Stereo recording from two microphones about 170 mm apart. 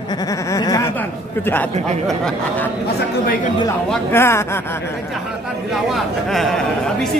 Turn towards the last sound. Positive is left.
turn(degrees=0)  # may be behind; listen again after turning